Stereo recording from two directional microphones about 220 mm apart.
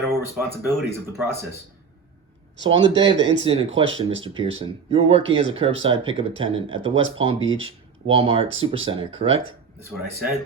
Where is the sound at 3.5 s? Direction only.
25° right (ahead or behind).